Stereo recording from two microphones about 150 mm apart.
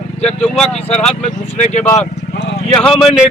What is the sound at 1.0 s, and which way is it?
Speech, 50° left (ahead or behind).